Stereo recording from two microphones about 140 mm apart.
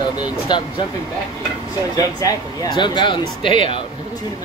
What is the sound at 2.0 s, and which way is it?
Speech, 25° left (ahead or behind).